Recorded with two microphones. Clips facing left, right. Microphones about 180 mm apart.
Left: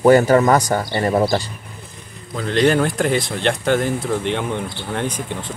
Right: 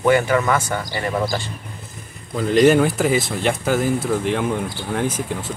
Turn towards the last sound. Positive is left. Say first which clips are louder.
# right 1 dB
turn(degrees=-5)  # may be behind; listen again after turning